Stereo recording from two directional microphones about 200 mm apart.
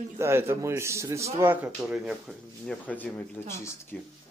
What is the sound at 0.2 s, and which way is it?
A man's voice, 10° right (ahead or behind).